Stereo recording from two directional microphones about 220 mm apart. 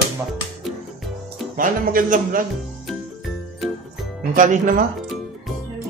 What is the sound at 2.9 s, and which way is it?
Jingle, centre (ahead or behind).